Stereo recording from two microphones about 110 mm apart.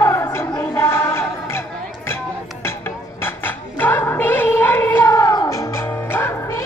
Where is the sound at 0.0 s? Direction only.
25° left (ahead or behind).